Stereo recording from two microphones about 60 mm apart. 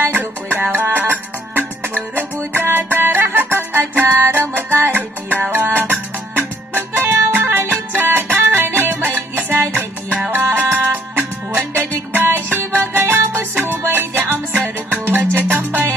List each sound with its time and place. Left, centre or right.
0.0 s music: right